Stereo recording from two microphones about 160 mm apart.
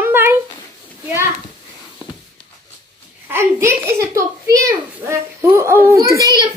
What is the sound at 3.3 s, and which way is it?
A child's voice, 15° right (ahead or behind).